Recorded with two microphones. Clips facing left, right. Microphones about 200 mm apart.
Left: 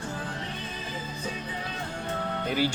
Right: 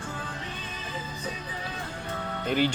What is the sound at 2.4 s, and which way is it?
Speech, 10° left (ahead or behind).